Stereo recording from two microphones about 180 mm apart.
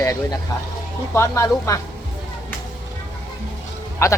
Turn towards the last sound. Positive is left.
turn(degrees=15)  # may be behind; listen again after turning